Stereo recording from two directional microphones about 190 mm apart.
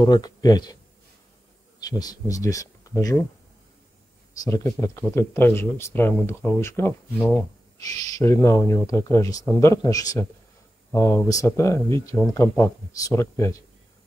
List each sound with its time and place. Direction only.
0.0 s speech: 20° left (ahead or behind)
1.8 s speech: 20° left (ahead or behind)
4.4 s speech: 15° left (ahead or behind)